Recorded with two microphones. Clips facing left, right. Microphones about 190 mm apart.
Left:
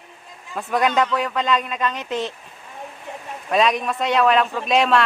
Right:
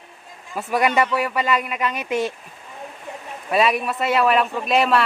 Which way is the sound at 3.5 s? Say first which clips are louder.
Even; 5° right (ahead or behind).